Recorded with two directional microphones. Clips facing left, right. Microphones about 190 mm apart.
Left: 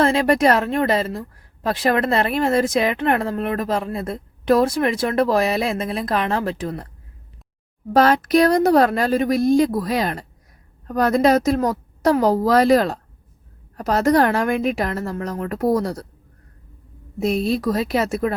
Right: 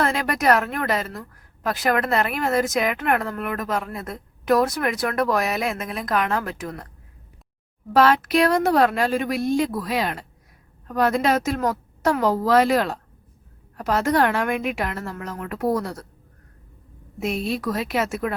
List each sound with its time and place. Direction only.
0.0 s speech: 30° left (ahead or behind)
7.9 s a woman's voice: 40° left (ahead or behind)
17.2 s a woman's voice: 35° left (ahead or behind)